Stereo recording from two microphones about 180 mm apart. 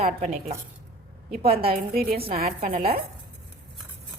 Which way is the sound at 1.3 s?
60° right (ahead or behind).